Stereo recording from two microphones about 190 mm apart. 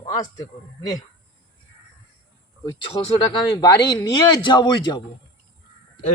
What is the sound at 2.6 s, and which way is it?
Speech, 25° left (ahead or behind).